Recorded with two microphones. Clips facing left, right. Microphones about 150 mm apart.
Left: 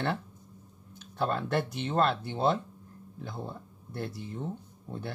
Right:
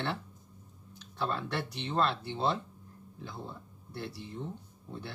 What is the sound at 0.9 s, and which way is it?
Speech, 50° left (ahead or behind).